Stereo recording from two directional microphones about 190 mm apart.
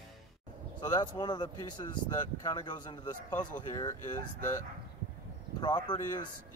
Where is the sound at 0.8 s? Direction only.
20° left (ahead or behind).